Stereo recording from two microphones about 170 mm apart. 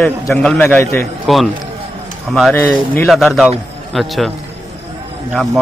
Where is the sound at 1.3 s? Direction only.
Centre (ahead or behind).